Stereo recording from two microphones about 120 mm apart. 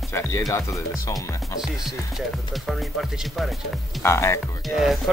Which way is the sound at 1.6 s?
Centre (ahead or behind).